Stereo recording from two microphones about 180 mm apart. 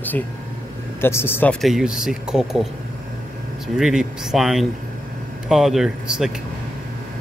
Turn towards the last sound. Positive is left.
turn(degrees=-5)  # may be behind; listen again after turning